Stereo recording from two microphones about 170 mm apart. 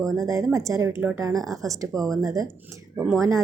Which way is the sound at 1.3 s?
Centre (ahead or behind).